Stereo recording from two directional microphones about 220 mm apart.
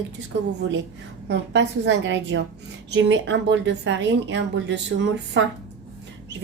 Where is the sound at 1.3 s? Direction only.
55° right (ahead or behind).